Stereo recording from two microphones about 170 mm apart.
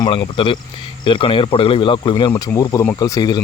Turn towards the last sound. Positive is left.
turn(degrees=25)  # may be behind; listen again after turning